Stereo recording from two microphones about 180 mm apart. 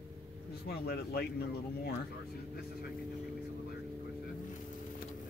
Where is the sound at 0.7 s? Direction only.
60° left (ahead or behind).